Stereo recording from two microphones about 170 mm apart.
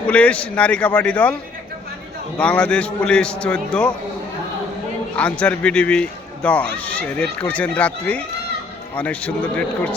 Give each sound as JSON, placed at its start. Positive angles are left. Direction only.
{"t": 0.1, "sound": "speech", "side_deg": 5}
{"t": 2.4, "sound": "speech", "side_deg": 5}
{"t": 5.1, "sound": "speech", "side_deg": 5}